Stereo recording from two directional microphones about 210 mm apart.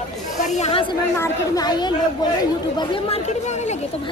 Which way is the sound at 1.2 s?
20° left (ahead or behind).